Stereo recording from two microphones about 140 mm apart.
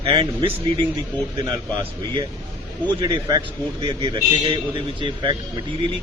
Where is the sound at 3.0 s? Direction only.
30° right (ahead or behind).